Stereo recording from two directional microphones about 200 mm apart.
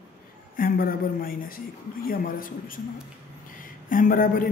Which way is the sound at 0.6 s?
45° left (ahead or behind).